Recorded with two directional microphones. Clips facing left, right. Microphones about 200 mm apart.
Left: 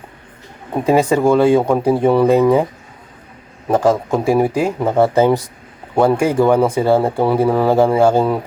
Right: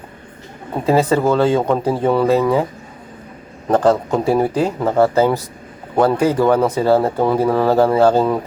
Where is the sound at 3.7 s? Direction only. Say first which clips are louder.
Even; 10° left (ahead or behind).